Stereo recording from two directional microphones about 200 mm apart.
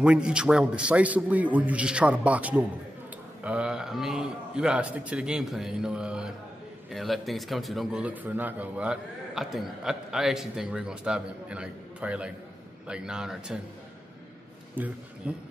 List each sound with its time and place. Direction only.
0.0 s a man's voice: 5° right (ahead or behind)
14.8 s a man's voice: 10° right (ahead or behind)